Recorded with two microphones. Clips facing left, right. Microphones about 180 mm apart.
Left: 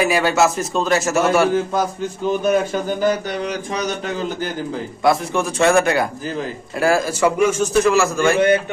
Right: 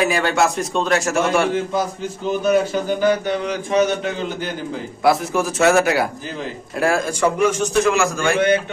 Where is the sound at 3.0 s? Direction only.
40° left (ahead or behind).